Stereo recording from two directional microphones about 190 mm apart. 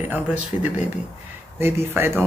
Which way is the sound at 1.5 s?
10° right (ahead or behind).